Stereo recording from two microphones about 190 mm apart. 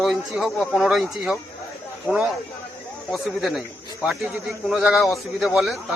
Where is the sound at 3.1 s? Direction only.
Centre (ahead or behind).